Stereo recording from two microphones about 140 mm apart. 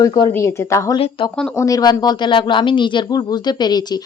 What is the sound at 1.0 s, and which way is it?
Speech, 40° left (ahead or behind).